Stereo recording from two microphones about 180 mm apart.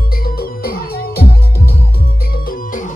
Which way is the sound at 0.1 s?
55° left (ahead or behind).